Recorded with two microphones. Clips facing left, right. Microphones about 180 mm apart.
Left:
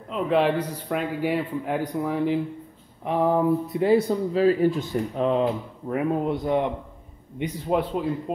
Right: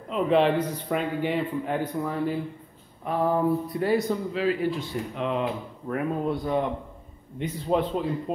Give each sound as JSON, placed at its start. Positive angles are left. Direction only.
{"t": 0.1, "sound": "a man's voice", "side_deg": 5}
{"t": 5.9, "sound": "a man's voice", "side_deg": 20}